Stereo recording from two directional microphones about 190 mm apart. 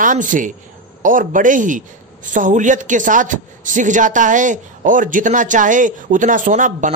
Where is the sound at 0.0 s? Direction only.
45° right (ahead or behind).